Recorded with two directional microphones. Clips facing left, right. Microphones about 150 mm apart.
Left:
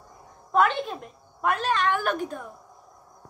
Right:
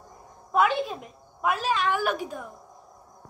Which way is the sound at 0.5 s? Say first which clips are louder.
Left 1 dB; 5° right (ahead or behind).